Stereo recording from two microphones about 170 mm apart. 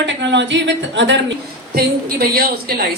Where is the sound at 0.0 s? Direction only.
90° right; by 2.7 s 65° right (ahead or behind).